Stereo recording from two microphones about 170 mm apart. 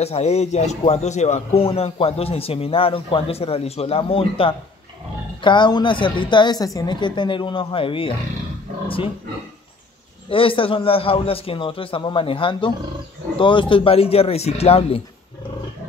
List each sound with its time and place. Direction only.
0.0 s a woman's voice: 40° left (ahead or behind)
10.3 s speech: 30° left (ahead or behind)